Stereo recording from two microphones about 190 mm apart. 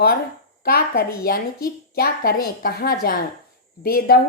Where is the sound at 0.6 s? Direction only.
50° left (ahead or behind).